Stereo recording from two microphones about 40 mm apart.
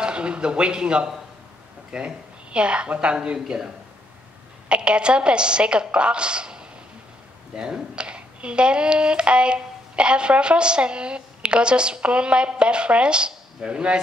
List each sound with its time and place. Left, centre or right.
0.0 s speech: right
4.6 s a woman's voice: right